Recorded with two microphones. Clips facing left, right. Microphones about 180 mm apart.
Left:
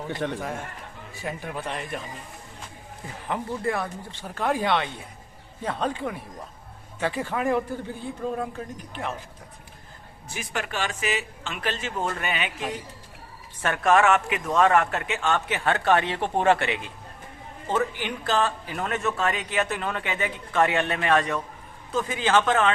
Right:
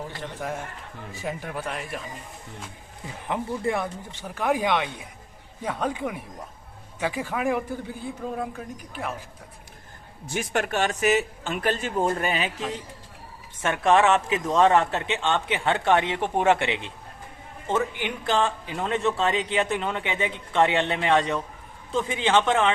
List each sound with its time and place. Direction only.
0.3 s speech: 15° right (ahead or behind)
3.2 s speech: 20° right (ahead or behind)
10.3 s speech: 50° right (ahead or behind)
12.0 s speech: 35° right (ahead or behind)
13.6 s speech: 20° right (ahead or behind)